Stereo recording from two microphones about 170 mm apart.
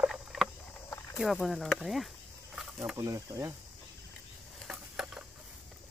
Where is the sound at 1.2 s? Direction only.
Centre (ahead or behind).